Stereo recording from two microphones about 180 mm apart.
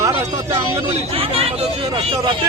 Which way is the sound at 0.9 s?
35° right (ahead or behind).